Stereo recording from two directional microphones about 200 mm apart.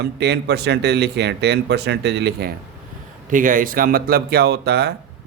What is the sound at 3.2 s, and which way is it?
Speech, 40° right (ahead or behind).